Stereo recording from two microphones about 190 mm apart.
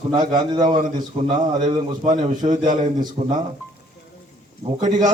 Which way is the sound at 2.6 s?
40° right (ahead or behind).